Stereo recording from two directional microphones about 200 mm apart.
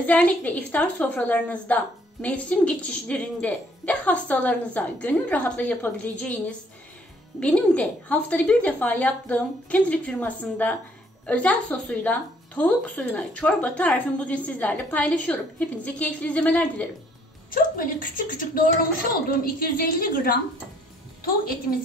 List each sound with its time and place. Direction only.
0.0 s a woman's voice: 5° left (ahead or behind)
17.5 s a woman's voice: 45° left (ahead or behind)